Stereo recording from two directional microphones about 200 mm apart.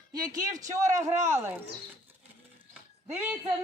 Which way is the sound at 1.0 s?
15° right (ahead or behind).